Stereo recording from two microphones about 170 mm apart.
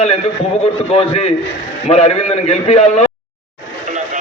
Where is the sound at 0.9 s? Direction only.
35° left (ahead or behind).